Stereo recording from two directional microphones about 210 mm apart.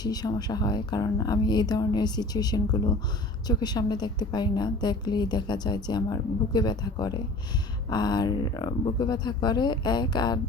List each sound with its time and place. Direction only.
0.0 s a woman's voice: 20° left (ahead or behind)